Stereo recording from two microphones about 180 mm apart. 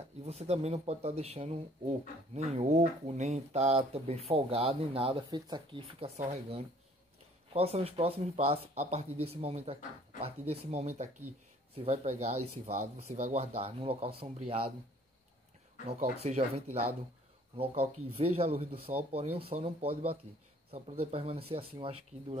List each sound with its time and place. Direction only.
0.2 s speech: 35° right (ahead or behind)
15.9 s speech: 35° right (ahead or behind)